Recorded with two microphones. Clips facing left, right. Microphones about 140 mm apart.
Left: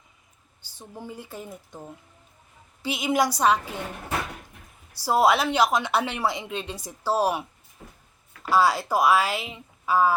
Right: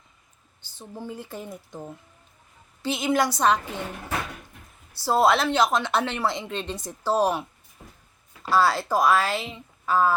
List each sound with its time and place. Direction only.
0.6 s a woman's voice: 10° left (ahead or behind)
2.8 s a woman's voice: 10° left (ahead or behind)
4.9 s a woman's voice: 10° left (ahead or behind)
8.4 s a woman's voice: 15° left (ahead or behind)